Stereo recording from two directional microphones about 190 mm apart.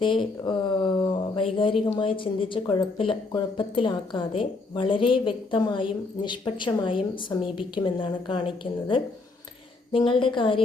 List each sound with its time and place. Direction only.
0.0 s speech: 25° left (ahead or behind)